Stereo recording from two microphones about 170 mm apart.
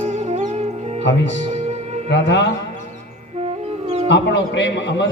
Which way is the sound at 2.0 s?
90° left.